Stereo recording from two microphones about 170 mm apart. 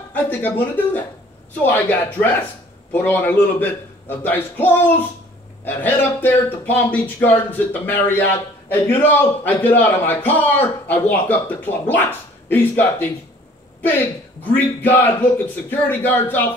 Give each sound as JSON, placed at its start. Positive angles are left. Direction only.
{"t": 0.1, "sound": "a man's voice", "side_deg": 10}
{"t": 14.5, "sound": "a man's voice", "side_deg": 10}